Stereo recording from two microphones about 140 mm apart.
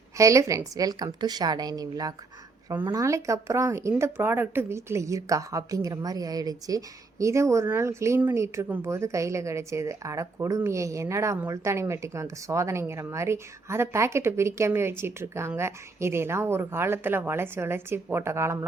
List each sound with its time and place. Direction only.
0.2 s speech: 20° right (ahead or behind)